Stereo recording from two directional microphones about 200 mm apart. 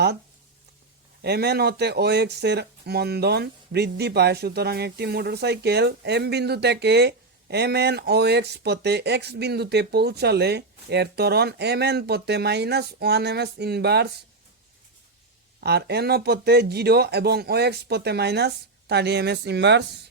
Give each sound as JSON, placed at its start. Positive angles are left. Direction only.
{"t": 1.2, "sound": "speech", "side_deg": -55}
{"t": 15.6, "sound": "speech", "side_deg": -55}